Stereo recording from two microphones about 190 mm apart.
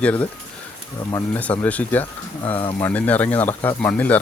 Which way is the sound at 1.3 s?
10° left (ahead or behind).